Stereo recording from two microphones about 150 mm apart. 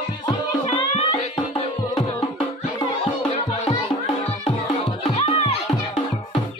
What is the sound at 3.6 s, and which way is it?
Music, 40° left (ahead or behind).